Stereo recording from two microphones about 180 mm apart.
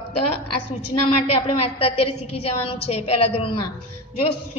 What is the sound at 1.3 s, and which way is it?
A woman's voice, 35° left (ahead or behind).